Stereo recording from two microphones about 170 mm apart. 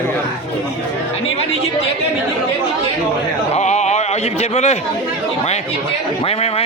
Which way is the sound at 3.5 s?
40° left (ahead or behind).